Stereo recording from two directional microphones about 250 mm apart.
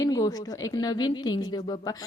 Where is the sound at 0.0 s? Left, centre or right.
Centre.